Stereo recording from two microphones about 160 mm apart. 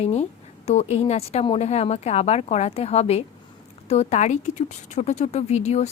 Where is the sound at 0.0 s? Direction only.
40° left (ahead or behind).